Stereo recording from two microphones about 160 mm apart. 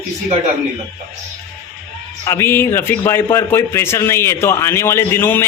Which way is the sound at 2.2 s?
15° left (ahead or behind).